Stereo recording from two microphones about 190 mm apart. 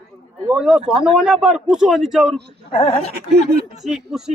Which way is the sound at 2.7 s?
30° left (ahead or behind).